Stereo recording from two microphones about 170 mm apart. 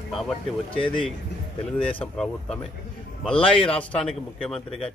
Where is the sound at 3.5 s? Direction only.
30° left (ahead or behind).